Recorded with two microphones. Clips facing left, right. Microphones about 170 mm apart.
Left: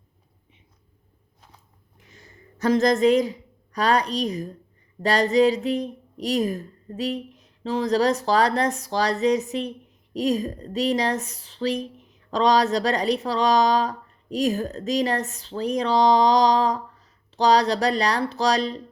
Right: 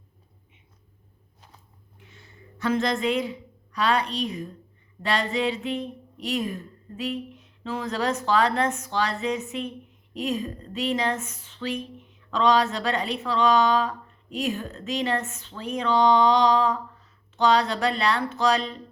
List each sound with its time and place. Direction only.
2.0 s a woman's voice: 40° left (ahead or behind)